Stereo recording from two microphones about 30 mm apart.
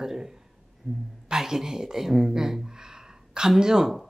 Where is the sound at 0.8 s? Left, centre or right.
Centre.